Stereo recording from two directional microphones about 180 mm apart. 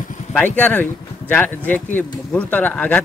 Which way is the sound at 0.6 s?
10° left (ahead or behind).